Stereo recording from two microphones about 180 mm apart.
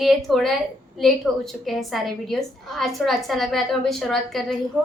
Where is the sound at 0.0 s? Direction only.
Centre (ahead or behind).